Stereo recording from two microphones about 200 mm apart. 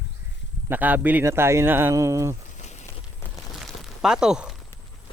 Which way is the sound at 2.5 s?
35° left (ahead or behind).